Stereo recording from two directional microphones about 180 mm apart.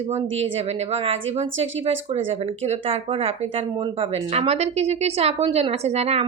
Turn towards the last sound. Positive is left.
turn(degrees=-35)  # may be behind; listen again after turning